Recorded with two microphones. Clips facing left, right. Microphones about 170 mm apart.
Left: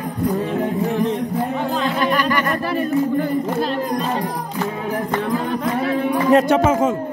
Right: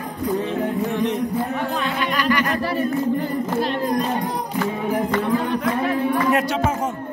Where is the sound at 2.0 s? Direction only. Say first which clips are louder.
Left 1 dB; 45° left (ahead or behind).